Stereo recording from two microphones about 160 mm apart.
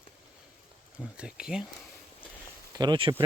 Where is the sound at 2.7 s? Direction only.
30° right (ahead or behind).